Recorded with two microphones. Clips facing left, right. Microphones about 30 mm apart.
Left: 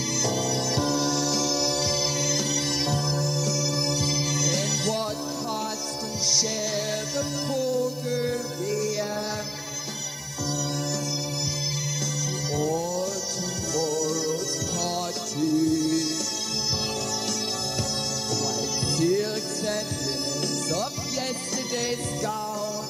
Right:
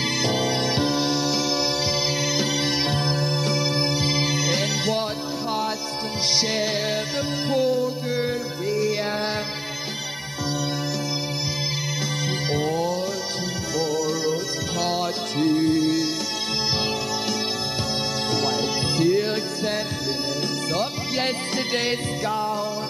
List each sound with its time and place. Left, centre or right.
0.2 s music: right
6.3 s music: right
12.4 s music: right
13.7 s music: right
15.3 s music: right
18.9 s music: right
21.7 s music: right